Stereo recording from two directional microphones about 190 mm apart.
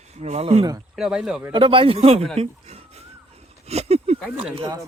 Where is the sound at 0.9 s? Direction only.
5° right (ahead or behind).